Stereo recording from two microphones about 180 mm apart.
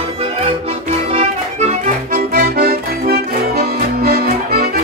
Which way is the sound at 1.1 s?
35° right (ahead or behind).